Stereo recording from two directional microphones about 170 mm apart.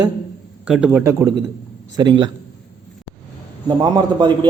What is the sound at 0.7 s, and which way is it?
Speech, 5° right (ahead or behind).